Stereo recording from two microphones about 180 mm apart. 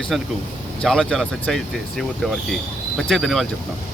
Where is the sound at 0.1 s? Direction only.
Centre (ahead or behind).